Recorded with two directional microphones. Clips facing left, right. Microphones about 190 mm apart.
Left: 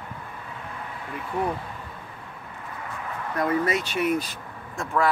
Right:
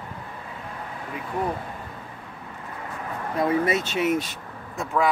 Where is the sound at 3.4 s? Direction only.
25° right (ahead or behind).